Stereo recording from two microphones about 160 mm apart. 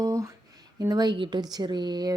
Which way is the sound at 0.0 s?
20° right (ahead or behind).